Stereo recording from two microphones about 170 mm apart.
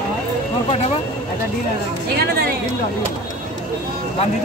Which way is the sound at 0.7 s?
35° left (ahead or behind).